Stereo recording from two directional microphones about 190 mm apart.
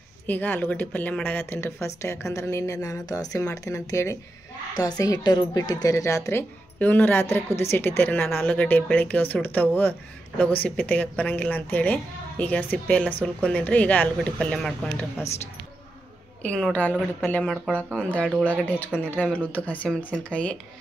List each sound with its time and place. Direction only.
0.3 s speech: 10° left (ahead or behind)
16.4 s speech: 5° left (ahead or behind)
18.3 s speech: 10° right (ahead or behind)
18.6 s speech: 10° left (ahead or behind)